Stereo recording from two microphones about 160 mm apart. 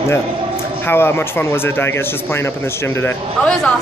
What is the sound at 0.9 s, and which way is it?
A woman's voice, 15° left (ahead or behind).